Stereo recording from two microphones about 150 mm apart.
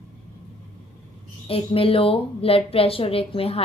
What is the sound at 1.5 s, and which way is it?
A woman's voice, 40° left (ahead or behind).